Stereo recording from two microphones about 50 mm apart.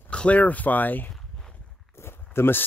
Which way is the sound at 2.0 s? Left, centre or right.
Left.